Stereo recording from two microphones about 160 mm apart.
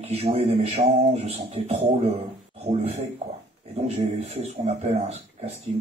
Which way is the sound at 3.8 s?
40° right (ahead or behind).